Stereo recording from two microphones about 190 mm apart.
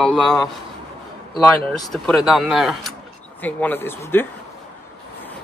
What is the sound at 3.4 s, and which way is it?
Speech, 10° left (ahead or behind).